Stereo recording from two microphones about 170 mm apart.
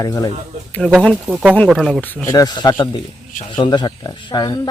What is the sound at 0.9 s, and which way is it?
Speech, 5° right (ahead or behind).